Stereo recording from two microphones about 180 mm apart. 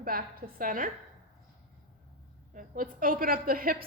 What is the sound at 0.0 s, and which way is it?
Speech, 55° right (ahead or behind).